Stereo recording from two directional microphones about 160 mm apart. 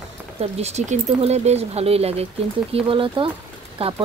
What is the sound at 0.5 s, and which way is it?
Speech, 45° right (ahead or behind).